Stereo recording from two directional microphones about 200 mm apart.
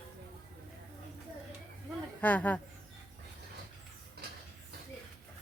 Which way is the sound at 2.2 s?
10° left (ahead or behind).